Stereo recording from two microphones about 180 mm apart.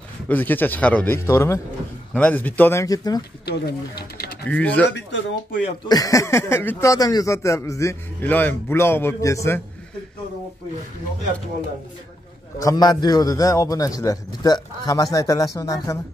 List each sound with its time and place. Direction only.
0.3 s speech: 10° left (ahead or behind)
3.4 s speech: 65° left (ahead or behind)
4.5 s speech: 10° left (ahead or behind)
4.8 s speech: 80° left
5.9 s speech: 20° left (ahead or behind)
12.5 s a man's voice: 20° left (ahead or behind)